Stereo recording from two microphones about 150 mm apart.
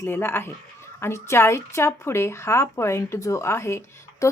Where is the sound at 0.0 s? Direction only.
15° left (ahead or behind).